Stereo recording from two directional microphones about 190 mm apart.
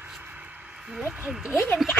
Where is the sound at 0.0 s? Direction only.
10° right (ahead or behind).